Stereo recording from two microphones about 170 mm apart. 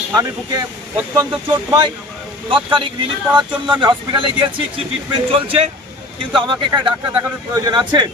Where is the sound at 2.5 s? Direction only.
30° right (ahead or behind).